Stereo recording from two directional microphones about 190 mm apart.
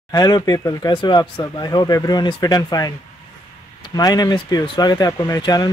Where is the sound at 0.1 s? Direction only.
20° left (ahead or behind).